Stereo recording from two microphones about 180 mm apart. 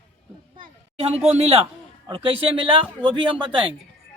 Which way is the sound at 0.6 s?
35° right (ahead or behind).